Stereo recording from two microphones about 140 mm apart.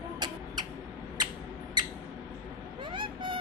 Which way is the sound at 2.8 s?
35° right (ahead or behind).